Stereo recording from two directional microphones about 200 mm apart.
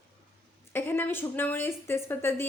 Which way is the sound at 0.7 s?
10° left (ahead or behind).